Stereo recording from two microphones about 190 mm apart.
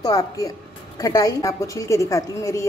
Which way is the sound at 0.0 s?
20° left (ahead or behind).